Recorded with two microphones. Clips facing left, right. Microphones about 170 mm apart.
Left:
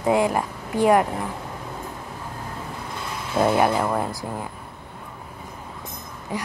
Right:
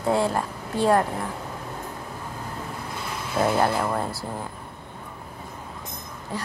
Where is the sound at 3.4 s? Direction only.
15° left (ahead or behind).